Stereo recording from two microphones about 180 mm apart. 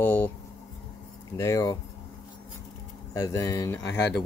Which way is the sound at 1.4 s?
20° left (ahead or behind).